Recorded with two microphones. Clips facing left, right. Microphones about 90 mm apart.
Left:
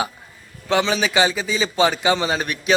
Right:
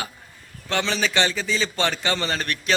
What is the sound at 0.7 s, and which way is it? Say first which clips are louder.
A man's voice: left 5 dB; 5° left (ahead or behind).